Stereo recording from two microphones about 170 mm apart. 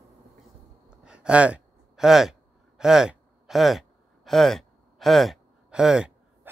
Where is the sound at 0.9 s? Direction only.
5° right (ahead or behind).